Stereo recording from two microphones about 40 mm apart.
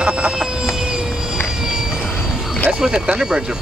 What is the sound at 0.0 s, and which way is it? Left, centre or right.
Vehicle, right.